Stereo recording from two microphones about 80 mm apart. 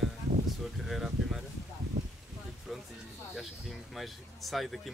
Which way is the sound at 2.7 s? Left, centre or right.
Centre.